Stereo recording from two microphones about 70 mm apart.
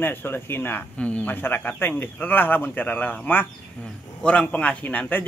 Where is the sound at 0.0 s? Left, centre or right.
Left.